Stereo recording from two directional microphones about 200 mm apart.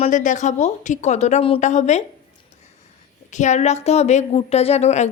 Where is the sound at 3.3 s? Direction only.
35° left (ahead or behind).